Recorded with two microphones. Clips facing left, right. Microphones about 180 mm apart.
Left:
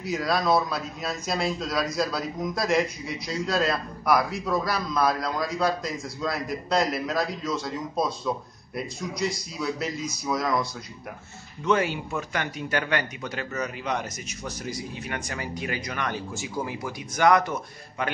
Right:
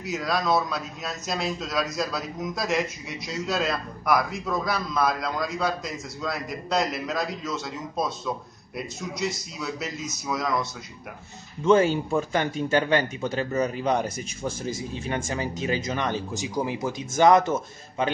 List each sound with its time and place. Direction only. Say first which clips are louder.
0.0 s speech: left 1 dB; centre (ahead or behind)
11.6 s speech: right 5 dB; 30° right (ahead or behind)